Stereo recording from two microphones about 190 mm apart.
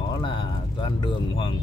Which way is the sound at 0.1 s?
25° left (ahead or behind).